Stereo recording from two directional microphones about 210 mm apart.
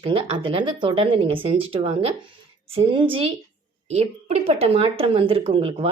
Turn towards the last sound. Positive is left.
turn(degrees=-25)  # may be behind; listen again after turning